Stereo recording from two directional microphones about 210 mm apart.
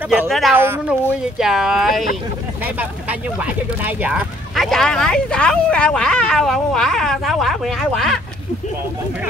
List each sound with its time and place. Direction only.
0.3 s speech: 5° right (ahead or behind)